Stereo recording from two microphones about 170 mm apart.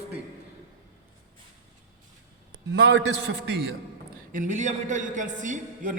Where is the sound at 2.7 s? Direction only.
90° right.